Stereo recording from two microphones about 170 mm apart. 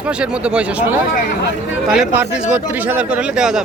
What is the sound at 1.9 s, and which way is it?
Speech, 10° right (ahead or behind).